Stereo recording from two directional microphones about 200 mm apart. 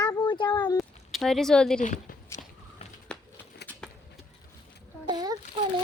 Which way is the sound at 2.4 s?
40° left (ahead or behind).